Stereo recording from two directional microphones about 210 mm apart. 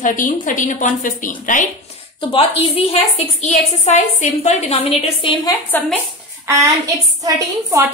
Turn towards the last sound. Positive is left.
turn(degrees=-15)  # may be behind; listen again after turning